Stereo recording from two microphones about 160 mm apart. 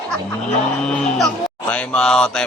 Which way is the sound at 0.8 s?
5° left (ahead or behind).